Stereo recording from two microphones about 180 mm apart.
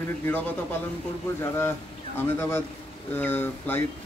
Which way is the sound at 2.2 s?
15° left (ahead or behind).